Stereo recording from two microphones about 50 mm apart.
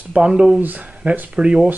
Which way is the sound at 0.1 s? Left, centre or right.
Centre.